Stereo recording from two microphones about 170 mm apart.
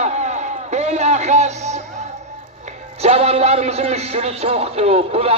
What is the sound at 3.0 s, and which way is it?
A man's voice, 35° right (ahead or behind).